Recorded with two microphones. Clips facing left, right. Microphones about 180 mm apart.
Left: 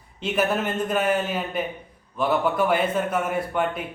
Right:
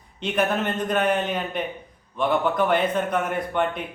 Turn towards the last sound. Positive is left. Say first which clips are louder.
# even
turn(degrees=5)  # may be behind; listen again after turning